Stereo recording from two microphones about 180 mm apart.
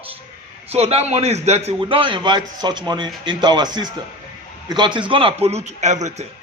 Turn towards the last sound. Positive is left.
turn(degrees=-40)  # may be behind; listen again after turning